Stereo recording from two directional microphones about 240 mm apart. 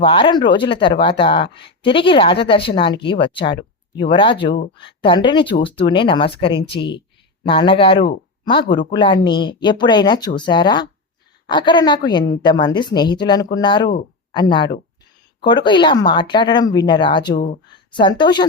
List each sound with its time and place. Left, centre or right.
0.0 s speech: centre